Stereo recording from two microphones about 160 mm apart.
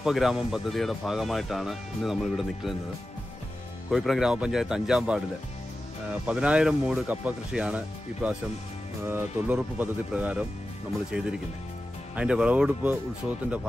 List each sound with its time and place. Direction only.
0.0 s speech: centre (ahead or behind)
3.9 s speech: centre (ahead or behind)